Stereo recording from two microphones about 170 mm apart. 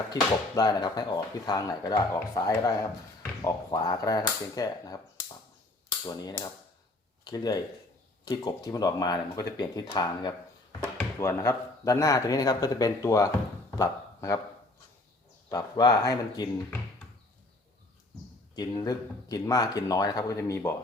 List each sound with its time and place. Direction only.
0.1 s speech: 25° left (ahead or behind)
6.1 s speech: 20° left (ahead or behind)
10.9 s speech: 15° left (ahead or behind)
13.7 s a sound: 20° left (ahead or behind)
15.4 s speech: 25° left (ahead or behind)
18.5 s speech: 20° left (ahead or behind)